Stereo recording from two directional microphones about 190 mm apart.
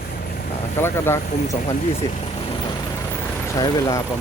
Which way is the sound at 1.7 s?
30° left (ahead or behind).